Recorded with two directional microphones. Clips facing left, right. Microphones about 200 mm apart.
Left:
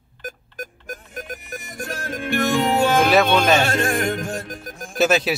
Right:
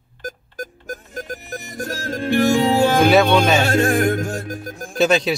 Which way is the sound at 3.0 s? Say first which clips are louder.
Right 3 dB; centre (ahead or behind).